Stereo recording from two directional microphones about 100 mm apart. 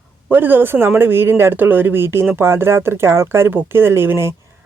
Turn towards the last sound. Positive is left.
turn(degrees=-25)  # may be behind; listen again after turning